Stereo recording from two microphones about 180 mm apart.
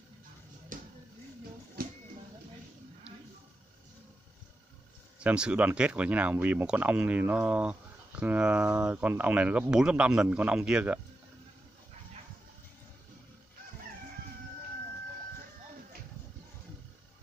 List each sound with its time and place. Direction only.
0.7 s music: 50° right (ahead or behind)
5.2 s speech: 5° right (ahead or behind)